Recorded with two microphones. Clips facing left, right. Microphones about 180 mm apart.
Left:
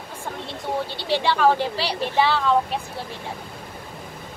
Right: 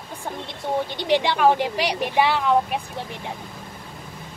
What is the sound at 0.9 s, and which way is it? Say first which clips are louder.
Speech: right 2 dB; 15° right (ahead or behind).